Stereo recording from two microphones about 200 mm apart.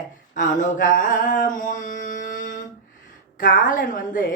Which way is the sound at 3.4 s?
40° left (ahead or behind).